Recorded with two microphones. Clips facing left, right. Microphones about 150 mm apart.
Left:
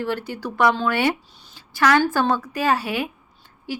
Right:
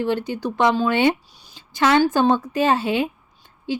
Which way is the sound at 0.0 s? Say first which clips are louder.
Right 4 dB; 20° right (ahead or behind).